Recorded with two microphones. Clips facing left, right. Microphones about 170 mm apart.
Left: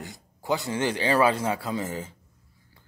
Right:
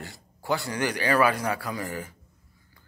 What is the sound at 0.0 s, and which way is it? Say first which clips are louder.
A man's voice: left 1 dB; 20° left (ahead or behind).